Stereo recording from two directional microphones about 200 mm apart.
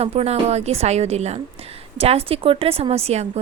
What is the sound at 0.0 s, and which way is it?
Speech, 30° right (ahead or behind).